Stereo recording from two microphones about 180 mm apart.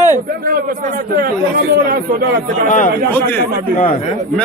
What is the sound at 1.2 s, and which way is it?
Speech, 55° right (ahead or behind).